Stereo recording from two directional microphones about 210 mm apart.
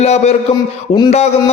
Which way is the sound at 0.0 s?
30° left (ahead or behind).